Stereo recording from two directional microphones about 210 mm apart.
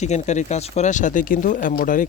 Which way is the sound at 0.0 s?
35° left (ahead or behind).